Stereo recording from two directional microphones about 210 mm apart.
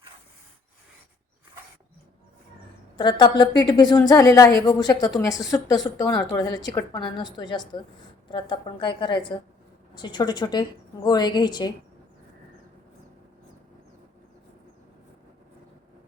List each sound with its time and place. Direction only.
3.0 s a woman's voice: 20° left (ahead or behind)